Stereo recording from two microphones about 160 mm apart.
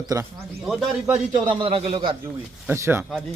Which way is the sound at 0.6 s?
Centre (ahead or behind).